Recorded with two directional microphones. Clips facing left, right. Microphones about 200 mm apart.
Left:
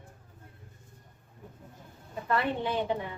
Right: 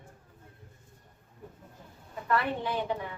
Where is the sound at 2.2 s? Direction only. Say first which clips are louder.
Even; 25° left (ahead or behind).